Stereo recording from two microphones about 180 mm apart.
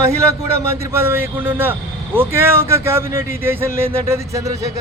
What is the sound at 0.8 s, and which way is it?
Speech, 15° right (ahead or behind).